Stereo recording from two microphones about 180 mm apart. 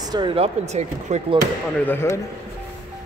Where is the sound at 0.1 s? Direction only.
25° right (ahead or behind).